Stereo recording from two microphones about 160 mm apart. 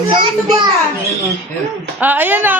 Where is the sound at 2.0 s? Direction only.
10° right (ahead or behind).